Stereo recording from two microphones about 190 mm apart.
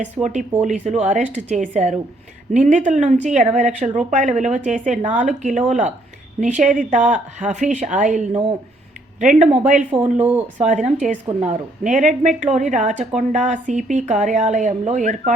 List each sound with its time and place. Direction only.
0.0 s speech: 40° right (ahead or behind)
9.9 s speech: 10° right (ahead or behind)
11.3 s speech: 40° right (ahead or behind)